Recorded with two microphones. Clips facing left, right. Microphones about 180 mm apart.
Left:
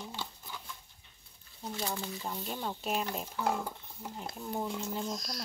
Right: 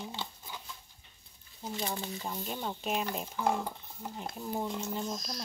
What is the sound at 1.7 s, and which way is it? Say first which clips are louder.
Speech: right 1 dB; 20° right (ahead or behind).